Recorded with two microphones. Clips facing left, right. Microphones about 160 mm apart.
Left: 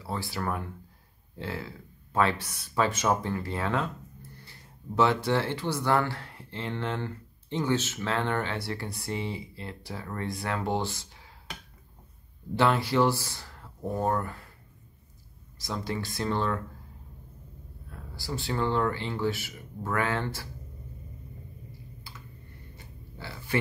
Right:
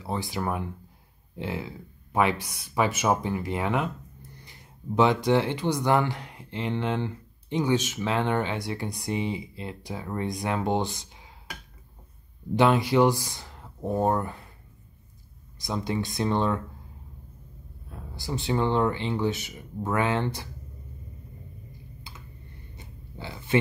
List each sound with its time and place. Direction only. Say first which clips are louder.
0.0 s speech: right 3 dB; 20° right (ahead or behind)
12.5 s speech: right 3 dB; 15° right (ahead or behind)
15.6 s speech: right 4 dB; 20° right (ahead or behind)
17.8 s speech: right 2 dB; 20° right (ahead or behind)
22.8 s a sound: right 4 dB; 20° right (ahead or behind)